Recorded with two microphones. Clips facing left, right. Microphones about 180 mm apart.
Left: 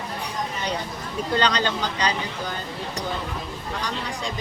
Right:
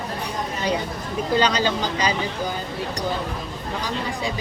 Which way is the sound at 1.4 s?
5° right (ahead or behind).